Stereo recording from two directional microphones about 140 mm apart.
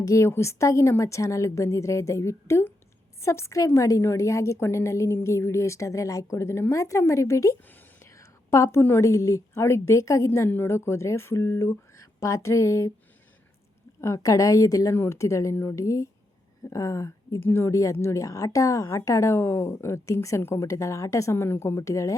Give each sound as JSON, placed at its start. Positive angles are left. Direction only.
{"t": 0.0, "sound": "a woman's voice", "side_deg": 20}
{"t": 14.0, "sound": "a woman's voice", "side_deg": 20}